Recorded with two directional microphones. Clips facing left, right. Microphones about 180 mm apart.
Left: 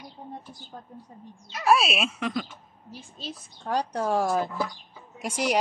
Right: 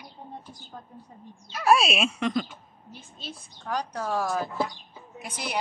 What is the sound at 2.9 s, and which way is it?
A woman's voice, 40° left (ahead or behind).